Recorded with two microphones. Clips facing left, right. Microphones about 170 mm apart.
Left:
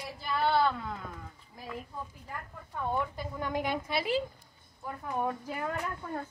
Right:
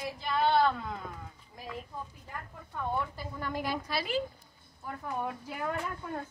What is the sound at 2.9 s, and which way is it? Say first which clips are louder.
A woman's voice: left 2 dB; 15° left (ahead or behind).